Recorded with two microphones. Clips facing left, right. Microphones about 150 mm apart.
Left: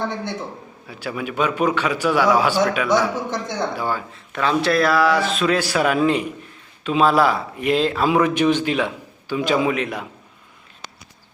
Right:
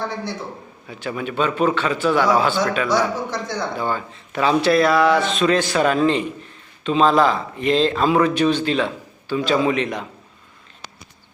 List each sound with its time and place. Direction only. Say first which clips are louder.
0.9 s a man's voice: right 1 dB; 5° left (ahead or behind)
2.9 s a man's voice: left 1 dB; 20° left (ahead or behind)
3.8 s a man's voice: right 1 dB; 5° left (ahead or behind)